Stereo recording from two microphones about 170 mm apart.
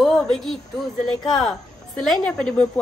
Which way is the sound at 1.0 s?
5° left (ahead or behind).